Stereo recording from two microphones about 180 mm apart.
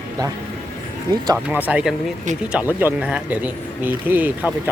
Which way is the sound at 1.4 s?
10° right (ahead or behind).